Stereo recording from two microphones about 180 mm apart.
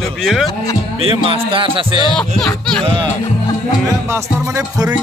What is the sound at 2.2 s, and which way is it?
Speech, 5° left (ahead or behind).